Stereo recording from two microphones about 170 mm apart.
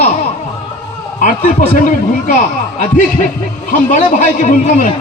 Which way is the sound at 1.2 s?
55° left (ahead or behind).